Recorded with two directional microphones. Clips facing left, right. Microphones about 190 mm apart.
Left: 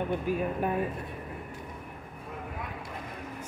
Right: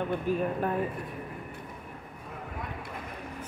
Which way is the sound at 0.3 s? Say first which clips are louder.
Right 2 dB; 10° left (ahead or behind).